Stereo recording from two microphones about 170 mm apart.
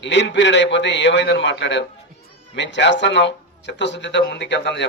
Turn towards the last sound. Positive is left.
turn(degrees=90)